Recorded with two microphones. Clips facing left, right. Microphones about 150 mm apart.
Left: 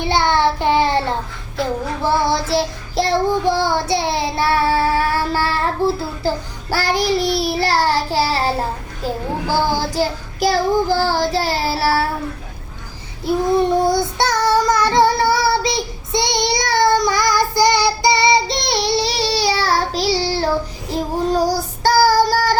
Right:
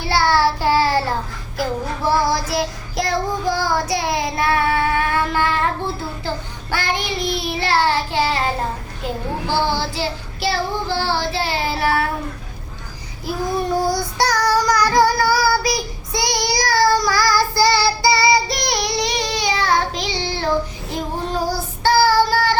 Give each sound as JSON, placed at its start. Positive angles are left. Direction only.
{"t": 0.0, "sound": "child singing", "side_deg": 20}
{"t": 9.0, "sound": "a child's voice", "side_deg": 35}
{"t": 9.6, "sound": "child singing", "side_deg": 45}
{"t": 13.2, "sound": "child singing", "side_deg": 25}